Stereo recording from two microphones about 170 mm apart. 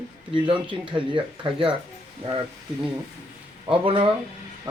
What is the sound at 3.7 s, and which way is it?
Speech, 30° right (ahead or behind).